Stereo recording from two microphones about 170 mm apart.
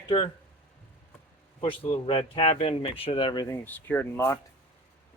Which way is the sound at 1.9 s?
30° left (ahead or behind).